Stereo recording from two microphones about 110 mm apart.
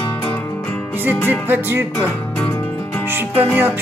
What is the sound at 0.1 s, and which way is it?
Music, 15° left (ahead or behind).